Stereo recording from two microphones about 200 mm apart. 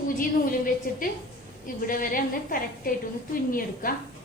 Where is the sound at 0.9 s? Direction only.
45° left (ahead or behind).